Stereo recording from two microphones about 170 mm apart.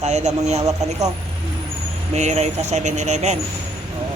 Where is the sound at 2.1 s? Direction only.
40° right (ahead or behind).